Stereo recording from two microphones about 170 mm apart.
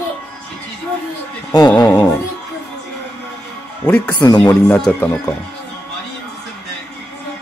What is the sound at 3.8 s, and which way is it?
Speech, 5° left (ahead or behind).